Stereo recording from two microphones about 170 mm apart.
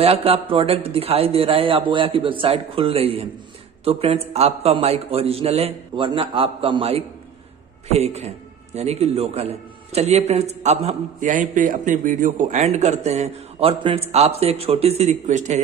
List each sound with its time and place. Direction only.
0.0 s a man's voice: 35° right (ahead or behind)